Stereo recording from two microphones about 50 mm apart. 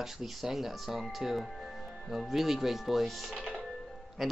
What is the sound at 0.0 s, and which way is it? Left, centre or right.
A woman's voice, centre.